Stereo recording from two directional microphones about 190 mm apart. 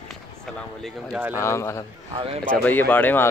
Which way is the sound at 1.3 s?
15° left (ahead or behind).